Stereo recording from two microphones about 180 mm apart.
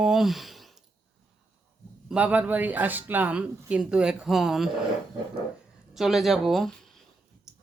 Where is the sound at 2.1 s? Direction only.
5° right (ahead or behind).